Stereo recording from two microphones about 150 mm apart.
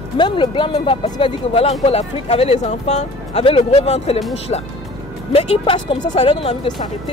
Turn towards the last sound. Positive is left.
turn(degrees=35)  # may be behind; listen again after turning